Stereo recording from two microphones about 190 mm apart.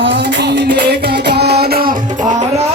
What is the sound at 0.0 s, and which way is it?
Music, 70° right (ahead or behind).